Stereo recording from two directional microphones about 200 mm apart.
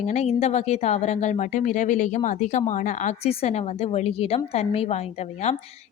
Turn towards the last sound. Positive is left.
turn(degrees=30)  # may be behind; listen again after turning